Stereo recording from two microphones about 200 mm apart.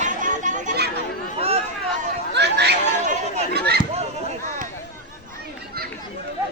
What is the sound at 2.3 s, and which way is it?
Chatter, 55° right (ahead or behind).